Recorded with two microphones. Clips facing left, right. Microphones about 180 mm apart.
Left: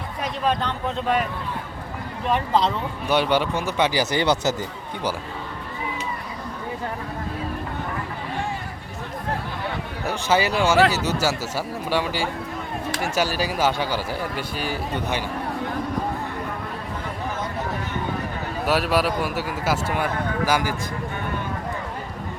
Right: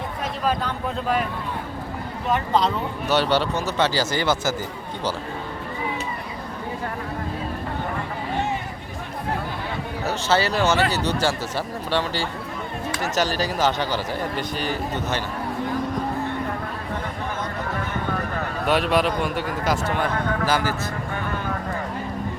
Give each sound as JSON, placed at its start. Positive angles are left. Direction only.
{"t": 0.4, "sound": "speech", "side_deg": -5}
{"t": 2.3, "sound": "speech", "side_deg": 0}
{"t": 3.1, "sound": "speech", "side_deg": 10}
{"t": 10.1, "sound": "speech", "side_deg": 10}
{"t": 18.6, "sound": "speech", "side_deg": 5}